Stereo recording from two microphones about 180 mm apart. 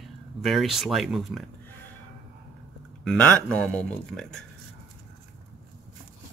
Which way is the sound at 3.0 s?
5° left (ahead or behind).